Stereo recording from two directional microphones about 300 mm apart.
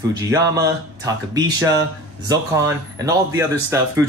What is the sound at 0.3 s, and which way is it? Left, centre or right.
Speech, centre.